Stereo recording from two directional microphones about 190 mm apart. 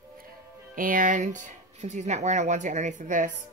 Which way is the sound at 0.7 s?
45° right (ahead or behind).